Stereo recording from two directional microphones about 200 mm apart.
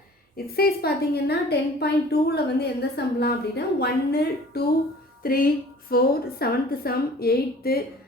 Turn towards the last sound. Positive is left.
turn(degrees=50)  # may be behind; listen again after turning